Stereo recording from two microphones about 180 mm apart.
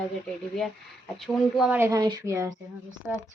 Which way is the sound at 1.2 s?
Centre (ahead or behind).